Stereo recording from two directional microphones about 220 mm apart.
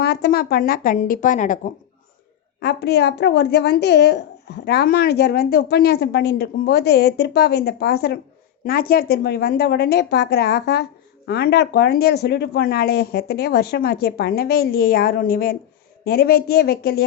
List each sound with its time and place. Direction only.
0.0 s a woman's voice: 45° left (ahead or behind)
2.6 s a woman's voice: 50° left (ahead or behind)